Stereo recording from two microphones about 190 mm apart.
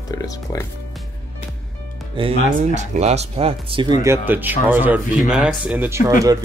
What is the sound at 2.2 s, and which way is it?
Speech, 25° right (ahead or behind).